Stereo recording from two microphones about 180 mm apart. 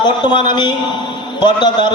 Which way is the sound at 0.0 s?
25° left (ahead or behind).